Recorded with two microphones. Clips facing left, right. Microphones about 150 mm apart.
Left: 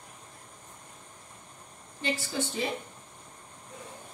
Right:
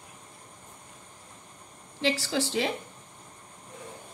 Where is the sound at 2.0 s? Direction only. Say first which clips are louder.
Right 4 dB; 90° right.